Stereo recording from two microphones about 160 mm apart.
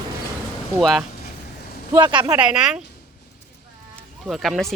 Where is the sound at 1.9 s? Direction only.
30° right (ahead or behind).